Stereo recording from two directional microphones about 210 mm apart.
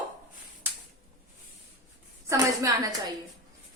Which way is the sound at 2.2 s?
15° right (ahead or behind).